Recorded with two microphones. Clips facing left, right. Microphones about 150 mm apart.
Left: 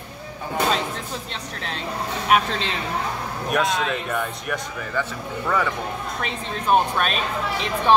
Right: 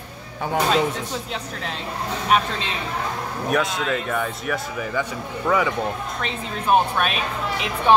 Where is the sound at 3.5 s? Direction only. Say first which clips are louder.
Even; centre (ahead or behind).